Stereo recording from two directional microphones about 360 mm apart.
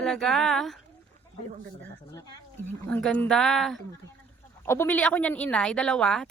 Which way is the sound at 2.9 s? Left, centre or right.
Centre.